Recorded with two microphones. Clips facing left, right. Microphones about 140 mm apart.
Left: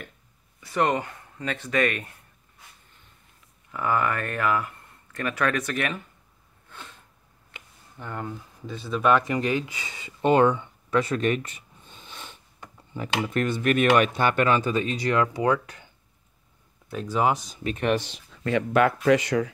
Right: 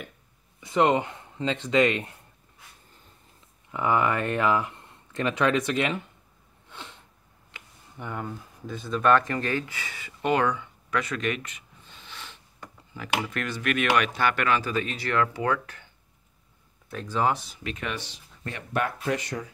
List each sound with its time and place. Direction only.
0.6 s speech: 20° right (ahead or behind)
3.7 s speech: 20° right (ahead or behind)
6.7 s a sound: 20° right (ahead or behind)
7.5 s a sound: 20° left (ahead or behind)
8.0 s speech: 5° right (ahead or behind); by 11.9 s 40° left (ahead or behind)
13.3 s speech: 30° left (ahead or behind)
14.1 s speech: 25° left (ahead or behind)
16.9 s speech: 10° left (ahead or behind)
17.5 s speech: 45° left (ahead or behind)
18.3 s speech: 90° left